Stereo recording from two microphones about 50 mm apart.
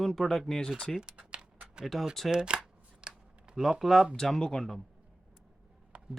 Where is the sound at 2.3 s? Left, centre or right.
Centre.